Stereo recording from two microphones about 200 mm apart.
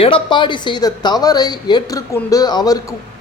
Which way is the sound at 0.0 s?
25° left (ahead or behind).